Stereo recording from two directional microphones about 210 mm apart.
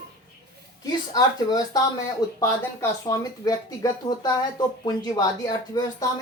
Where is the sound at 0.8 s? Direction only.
20° left (ahead or behind).